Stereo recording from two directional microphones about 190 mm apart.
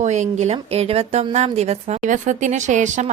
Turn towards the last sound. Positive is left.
turn(degrees=-40)  # may be behind; listen again after turning